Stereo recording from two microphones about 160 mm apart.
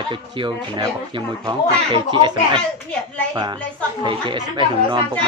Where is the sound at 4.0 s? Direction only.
30° right (ahead or behind).